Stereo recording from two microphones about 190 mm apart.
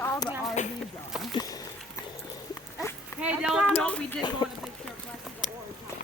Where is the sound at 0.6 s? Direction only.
40° left (ahead or behind).